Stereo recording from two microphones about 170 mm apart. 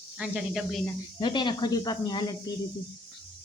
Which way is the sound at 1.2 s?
25° left (ahead or behind).